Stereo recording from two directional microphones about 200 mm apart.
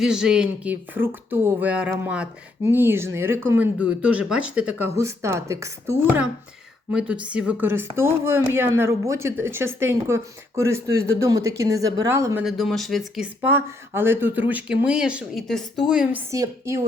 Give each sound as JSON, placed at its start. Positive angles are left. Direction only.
{"t": 0.0, "sound": "speech", "side_deg": -5}
{"t": 6.9, "sound": "speech", "side_deg": -5}
{"t": 16.3, "sound": "speech", "side_deg": -15}